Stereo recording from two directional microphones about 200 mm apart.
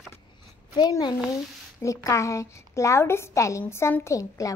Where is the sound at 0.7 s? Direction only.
20° left (ahead or behind).